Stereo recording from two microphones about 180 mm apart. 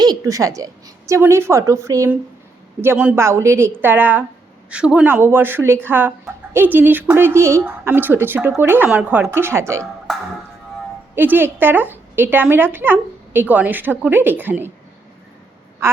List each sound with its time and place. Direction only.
0.0 s a woman's voice: 20° right (ahead or behind)
11.1 s speech: 10° right (ahead or behind)